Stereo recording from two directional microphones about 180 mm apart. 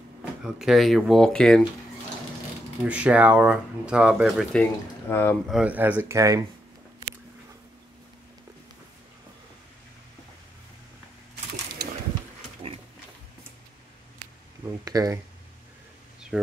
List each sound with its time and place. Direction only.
0.4 s speech: centre (ahead or behind)
2.8 s speech: 5° right (ahead or behind); by 5.4 s 10° left (ahead or behind)
5.5 s speech: 5° right (ahead or behind)
11.8 s a sound: 60° right (ahead or behind)
14.9 s speech: 20° right (ahead or behind)